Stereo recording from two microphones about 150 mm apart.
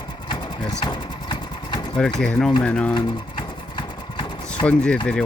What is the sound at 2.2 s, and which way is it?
Speech, 5° left (ahead or behind).